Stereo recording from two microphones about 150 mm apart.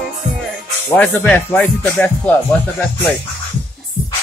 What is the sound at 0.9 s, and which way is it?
Speech, 10° left (ahead or behind).